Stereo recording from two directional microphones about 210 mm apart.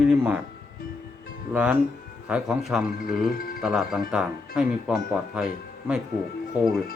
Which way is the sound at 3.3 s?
45° left (ahead or behind).